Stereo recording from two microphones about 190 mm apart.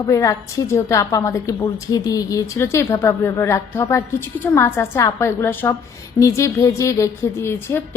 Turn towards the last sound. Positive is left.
turn(degrees=15)  # may be behind; listen again after turning